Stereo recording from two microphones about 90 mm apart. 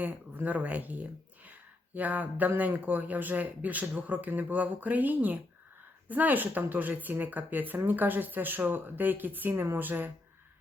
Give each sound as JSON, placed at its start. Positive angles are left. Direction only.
{"t": 0.0, "sound": "speech", "side_deg": -15}